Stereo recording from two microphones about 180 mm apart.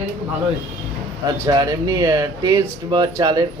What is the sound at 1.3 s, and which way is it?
Speech, 20° right (ahead or behind).